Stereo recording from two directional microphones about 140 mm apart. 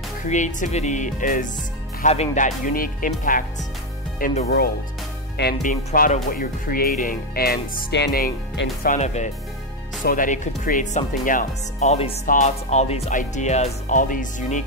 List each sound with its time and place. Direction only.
0.3 s speech: 60° left (ahead or behind)
2.0 s speech: 60° left (ahead or behind); by 3.4 s 75° left (ahead or behind)
4.2 s speech: 90° left
5.5 s speech: 70° left (ahead or behind); by 8.3 s 90° left
8.8 s speech: 60° left (ahead or behind)
10.0 s speech: 70° left (ahead or behind); by 13.1 s 50° left (ahead or behind)
13.1 s speech: 65° left (ahead or behind)